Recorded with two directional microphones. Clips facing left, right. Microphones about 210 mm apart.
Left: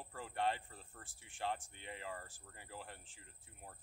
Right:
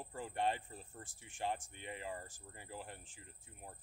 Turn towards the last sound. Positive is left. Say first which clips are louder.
# right 2 dB
turn(degrees=-15)  # may be behind; listen again after turning